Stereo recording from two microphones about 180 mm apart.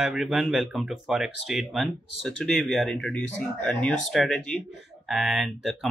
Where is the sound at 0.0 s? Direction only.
Centre (ahead or behind).